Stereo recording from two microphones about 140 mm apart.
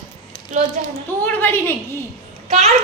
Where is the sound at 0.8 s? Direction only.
60° right (ahead or behind).